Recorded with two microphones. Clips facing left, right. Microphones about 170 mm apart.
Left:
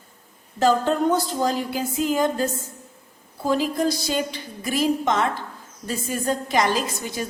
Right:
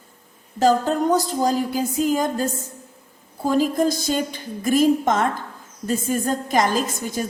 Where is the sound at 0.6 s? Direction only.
40° right (ahead or behind).